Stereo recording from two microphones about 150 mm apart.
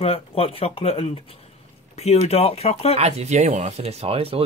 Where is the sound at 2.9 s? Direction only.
45° right (ahead or behind).